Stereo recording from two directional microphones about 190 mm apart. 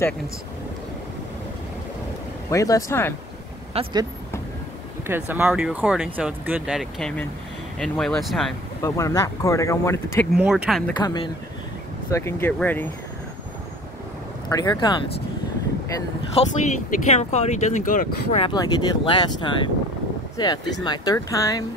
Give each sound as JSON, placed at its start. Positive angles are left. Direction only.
{"t": 2.5, "sound": "speech", "side_deg": 15}
{"t": 3.7, "sound": "speech", "side_deg": -20}
{"t": 8.8, "sound": "speech", "side_deg": 15}
{"t": 10.3, "sound": "speech", "side_deg": 0}
{"t": 11.0, "sound": "speech", "side_deg": 20}
{"t": 14.5, "sound": "speech", "side_deg": 20}
{"t": 16.3, "sound": "speech", "side_deg": 40}
{"t": 18.4, "sound": "speech", "side_deg": 20}
{"t": 20.8, "sound": "speech", "side_deg": 20}